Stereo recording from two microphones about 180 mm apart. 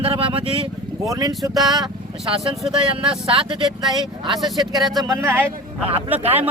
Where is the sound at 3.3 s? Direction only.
30° right (ahead or behind).